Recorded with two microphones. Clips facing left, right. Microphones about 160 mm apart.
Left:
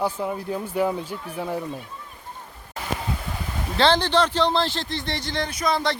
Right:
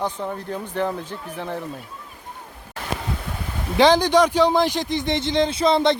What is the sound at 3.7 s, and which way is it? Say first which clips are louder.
A man's voice: right 4 dB; 15° right (ahead or behind).